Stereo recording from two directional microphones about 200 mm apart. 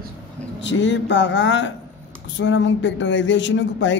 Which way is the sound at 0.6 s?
65° left (ahead or behind).